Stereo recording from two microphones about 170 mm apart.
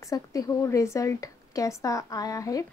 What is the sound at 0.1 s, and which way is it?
Speech, 20° left (ahead or behind).